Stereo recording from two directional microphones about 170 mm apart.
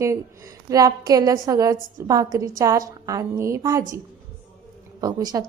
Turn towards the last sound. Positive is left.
turn(degrees=-20)  # may be behind; listen again after turning